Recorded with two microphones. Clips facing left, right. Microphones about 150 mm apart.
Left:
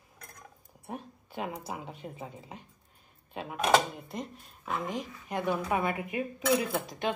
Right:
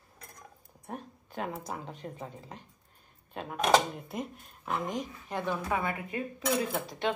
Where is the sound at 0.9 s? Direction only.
5° left (ahead or behind).